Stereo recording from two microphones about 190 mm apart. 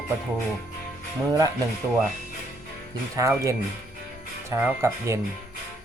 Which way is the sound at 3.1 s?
15° right (ahead or behind).